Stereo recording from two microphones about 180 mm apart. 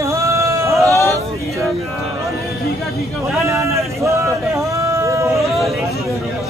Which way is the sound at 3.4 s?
15° right (ahead or behind).